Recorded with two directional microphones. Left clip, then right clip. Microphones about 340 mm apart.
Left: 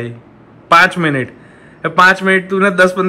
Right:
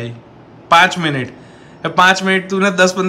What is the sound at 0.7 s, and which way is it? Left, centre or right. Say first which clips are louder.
A man's voice: left 1 dB; centre.